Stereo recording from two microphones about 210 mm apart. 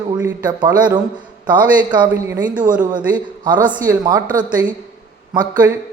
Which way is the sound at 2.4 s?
40° right (ahead or behind).